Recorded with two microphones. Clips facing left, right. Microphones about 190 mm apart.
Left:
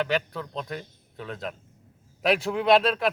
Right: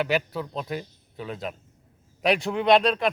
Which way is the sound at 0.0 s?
10° right (ahead or behind).